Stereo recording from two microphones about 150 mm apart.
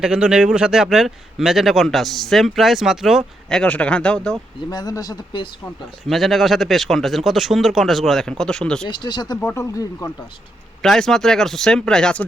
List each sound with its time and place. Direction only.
0.0 s speech: 5° right (ahead or behind)
4.7 s speech: 25° left (ahead or behind)
6.1 s speech: centre (ahead or behind)
8.9 s speech: 30° left (ahead or behind)
10.8 s speech: centre (ahead or behind)